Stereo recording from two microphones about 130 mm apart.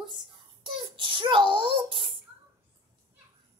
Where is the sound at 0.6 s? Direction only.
40° right (ahead or behind).